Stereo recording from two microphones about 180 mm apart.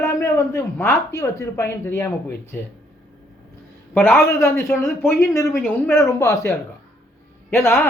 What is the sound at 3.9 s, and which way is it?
A man's voice, 10° left (ahead or behind).